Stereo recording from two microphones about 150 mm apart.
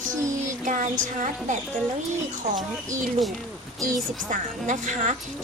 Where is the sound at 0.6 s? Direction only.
60° right (ahead or behind).